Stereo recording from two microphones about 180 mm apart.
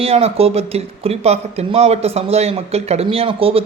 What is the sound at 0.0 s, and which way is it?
Speech, 35° right (ahead or behind).